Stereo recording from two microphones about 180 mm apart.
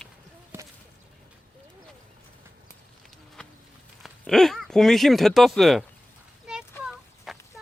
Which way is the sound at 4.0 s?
Centre (ahead or behind).